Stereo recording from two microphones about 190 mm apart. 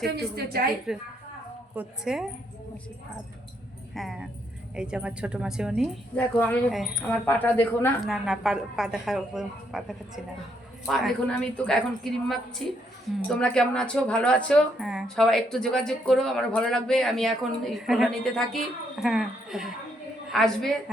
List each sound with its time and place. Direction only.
0.2 s a woman's voice: 55° right (ahead or behind)
0.9 s speech: centre (ahead or behind)
3.9 s speech: centre (ahead or behind)
6.1 s speech: 5° left (ahead or behind)
8.0 s speech: centre (ahead or behind)
11.5 s speech: 5° left (ahead or behind)